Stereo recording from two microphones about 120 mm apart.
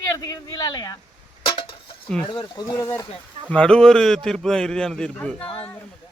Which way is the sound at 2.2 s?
50° left (ahead or behind).